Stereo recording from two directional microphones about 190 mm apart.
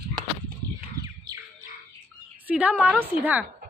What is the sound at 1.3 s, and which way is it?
Bird, 25° right (ahead or behind).